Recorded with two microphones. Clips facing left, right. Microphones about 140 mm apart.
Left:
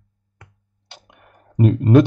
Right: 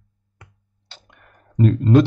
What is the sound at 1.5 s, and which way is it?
Speech, 15° left (ahead or behind).